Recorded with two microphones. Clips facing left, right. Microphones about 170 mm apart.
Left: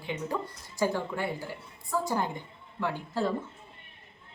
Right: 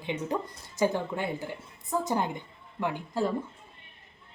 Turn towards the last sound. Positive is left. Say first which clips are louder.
# right 1 dB
turn(degrees=-15)  # may be behind; listen again after turning